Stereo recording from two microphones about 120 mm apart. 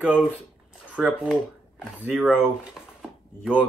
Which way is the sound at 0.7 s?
10° right (ahead or behind).